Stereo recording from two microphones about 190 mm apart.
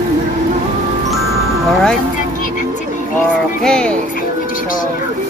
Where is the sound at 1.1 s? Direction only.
Centre (ahead or behind).